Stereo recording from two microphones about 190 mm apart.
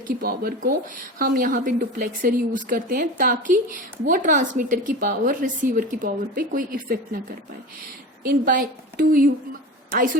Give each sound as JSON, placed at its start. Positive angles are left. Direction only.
{"t": 0.2, "sound": "a woman's voice", "side_deg": -50}
{"t": 8.3, "sound": "a woman's voice", "side_deg": -50}